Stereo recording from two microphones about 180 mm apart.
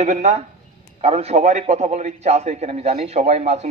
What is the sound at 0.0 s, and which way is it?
A man's voice, 40° right (ahead or behind).